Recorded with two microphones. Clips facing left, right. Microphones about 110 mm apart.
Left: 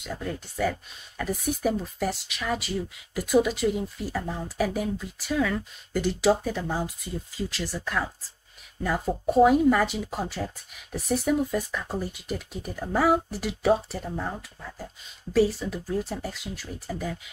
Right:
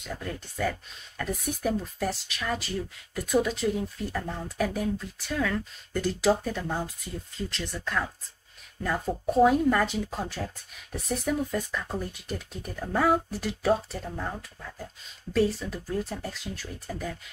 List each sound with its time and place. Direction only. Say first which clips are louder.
0.0 s speech: left 3 dB; 5° left (ahead or behind)